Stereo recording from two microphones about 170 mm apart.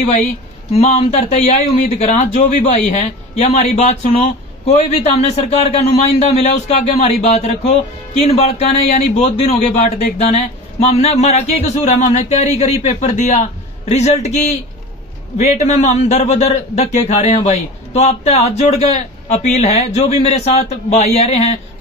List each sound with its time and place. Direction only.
0.7 s a man's voice: 40° left (ahead or behind)